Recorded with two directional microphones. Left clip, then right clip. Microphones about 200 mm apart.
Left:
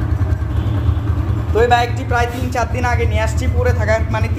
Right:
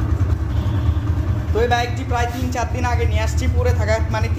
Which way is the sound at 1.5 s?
20° left (ahead or behind).